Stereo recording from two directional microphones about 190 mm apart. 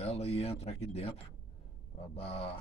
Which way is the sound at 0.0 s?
35° left (ahead or behind).